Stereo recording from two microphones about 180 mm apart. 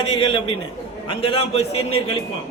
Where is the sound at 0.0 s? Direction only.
30° left (ahead or behind).